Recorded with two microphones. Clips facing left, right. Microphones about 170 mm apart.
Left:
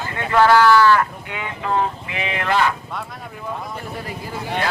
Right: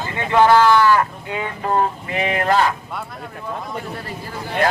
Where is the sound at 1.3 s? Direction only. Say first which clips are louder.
Right 2 dB; 35° right (ahead or behind).